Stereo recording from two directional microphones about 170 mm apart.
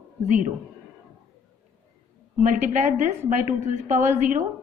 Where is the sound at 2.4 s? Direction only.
45° right (ahead or behind).